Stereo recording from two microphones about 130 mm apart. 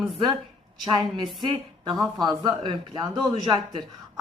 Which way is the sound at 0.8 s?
30° right (ahead or behind).